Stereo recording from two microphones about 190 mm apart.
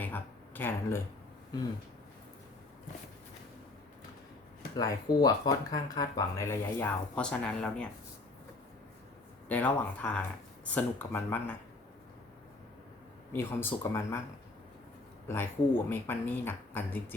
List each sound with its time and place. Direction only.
0.0 s speech: 10° left (ahead or behind)
4.8 s speech: 20° left (ahead or behind); by 7.9 s 5° left (ahead or behind)
9.5 s speech: 10° left (ahead or behind)
13.3 s speech: 10° left (ahead or behind)
15.3 s speech: 10° left (ahead or behind)